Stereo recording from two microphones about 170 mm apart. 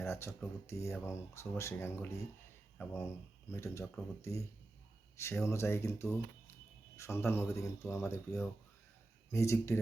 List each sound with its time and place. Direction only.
0.1 s speech: 15° left (ahead or behind)